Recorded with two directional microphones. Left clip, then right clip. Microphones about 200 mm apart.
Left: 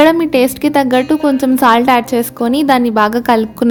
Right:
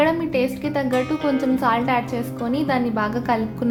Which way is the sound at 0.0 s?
55° left (ahead or behind).